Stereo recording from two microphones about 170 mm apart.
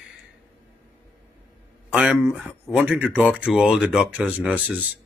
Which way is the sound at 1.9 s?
5° right (ahead or behind).